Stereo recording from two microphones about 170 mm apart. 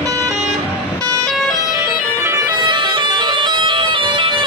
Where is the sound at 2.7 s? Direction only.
25° right (ahead or behind).